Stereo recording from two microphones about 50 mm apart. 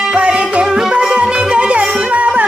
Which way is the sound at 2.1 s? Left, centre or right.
Right.